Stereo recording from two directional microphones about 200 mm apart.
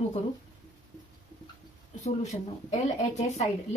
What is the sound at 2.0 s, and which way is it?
Speech, 35° left (ahead or behind).